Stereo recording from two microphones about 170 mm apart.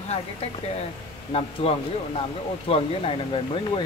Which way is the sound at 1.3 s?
35° left (ahead or behind).